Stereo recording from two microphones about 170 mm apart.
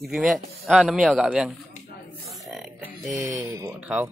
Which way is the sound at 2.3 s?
Centre (ahead or behind).